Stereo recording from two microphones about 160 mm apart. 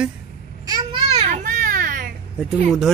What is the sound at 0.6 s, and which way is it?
Babbling, 30° right (ahead or behind).